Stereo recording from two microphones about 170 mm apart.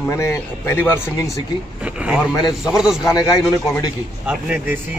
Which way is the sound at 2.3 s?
20° left (ahead or behind).